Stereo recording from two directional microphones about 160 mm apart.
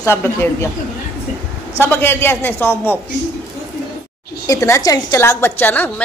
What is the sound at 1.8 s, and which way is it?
A woman's voice, 15° left (ahead or behind).